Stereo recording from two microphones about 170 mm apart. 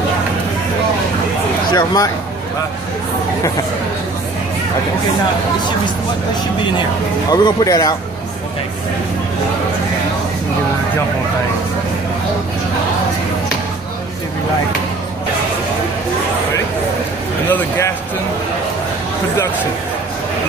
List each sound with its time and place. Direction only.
1.7 s speech: 25° left (ahead or behind)
7.2 s speech: 20° left (ahead or behind)
17.5 s a man's voice: 15° left (ahead or behind)